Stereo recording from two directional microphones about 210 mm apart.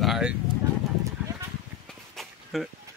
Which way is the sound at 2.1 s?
Centre (ahead or behind).